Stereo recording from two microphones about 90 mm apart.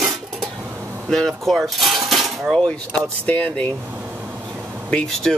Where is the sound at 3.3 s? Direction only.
20° left (ahead or behind).